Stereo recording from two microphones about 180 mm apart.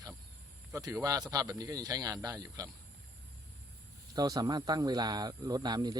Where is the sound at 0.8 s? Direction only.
20° right (ahead or behind).